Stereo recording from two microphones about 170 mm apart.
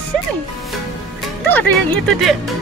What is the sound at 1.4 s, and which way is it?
Speech, 10° left (ahead or behind).